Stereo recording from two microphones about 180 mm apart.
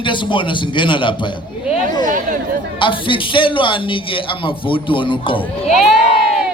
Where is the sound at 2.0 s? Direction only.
45° right (ahead or behind).